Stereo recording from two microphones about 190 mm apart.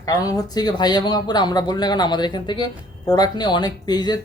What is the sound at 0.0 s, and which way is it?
Speech, 20° left (ahead or behind).